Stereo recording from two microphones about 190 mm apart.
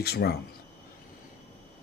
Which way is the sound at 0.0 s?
55° left (ahead or behind).